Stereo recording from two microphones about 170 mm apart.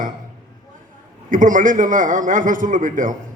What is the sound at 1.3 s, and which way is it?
A man's voice, 50° right (ahead or behind).